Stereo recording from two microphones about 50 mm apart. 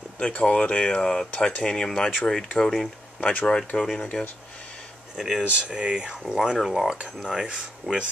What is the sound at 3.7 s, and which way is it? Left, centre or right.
Speech, left.